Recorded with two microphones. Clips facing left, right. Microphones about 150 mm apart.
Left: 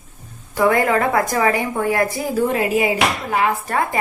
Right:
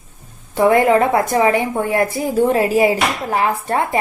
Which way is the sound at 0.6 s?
25° right (ahead or behind).